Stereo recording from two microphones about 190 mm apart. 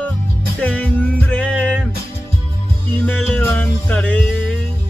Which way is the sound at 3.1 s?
10° left (ahead or behind).